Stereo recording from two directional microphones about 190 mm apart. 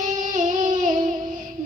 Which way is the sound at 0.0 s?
40° right (ahead or behind).